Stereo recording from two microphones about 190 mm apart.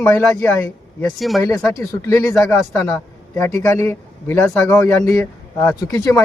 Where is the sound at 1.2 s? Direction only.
Centre (ahead or behind).